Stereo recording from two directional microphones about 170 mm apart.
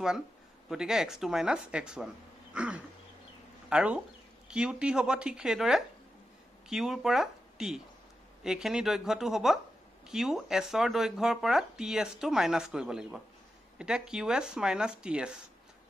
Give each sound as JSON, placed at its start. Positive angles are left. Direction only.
{"t": 0.7, "sound": "speech", "side_deg": -5}
{"t": 2.5, "sound": "a sound", "side_deg": -5}
{"t": 3.6, "sound": "speech", "side_deg": -5}